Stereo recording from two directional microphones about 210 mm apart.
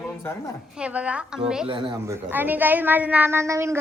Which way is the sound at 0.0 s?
10° left (ahead or behind).